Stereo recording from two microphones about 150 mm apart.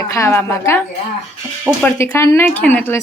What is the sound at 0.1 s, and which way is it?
Speech, 20° left (ahead or behind).